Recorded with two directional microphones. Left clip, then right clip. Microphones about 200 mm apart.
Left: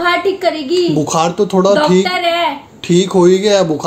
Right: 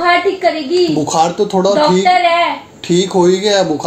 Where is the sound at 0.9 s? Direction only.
55° left (ahead or behind).